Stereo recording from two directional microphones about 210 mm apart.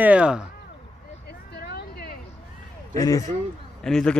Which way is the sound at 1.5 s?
50° left (ahead or behind).